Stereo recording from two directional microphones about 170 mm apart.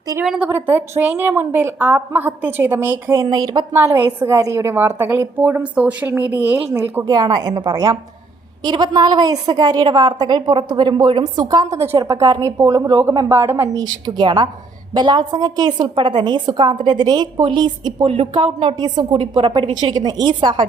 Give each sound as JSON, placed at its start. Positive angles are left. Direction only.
{"t": 0.3, "sound": "a woman's voice", "side_deg": -10}
{"t": 3.7, "sound": "a woman's voice", "side_deg": -15}
{"t": 7.0, "sound": "a woman's voice", "side_deg": -25}
{"t": 13.8, "sound": "a woman's voice", "side_deg": -25}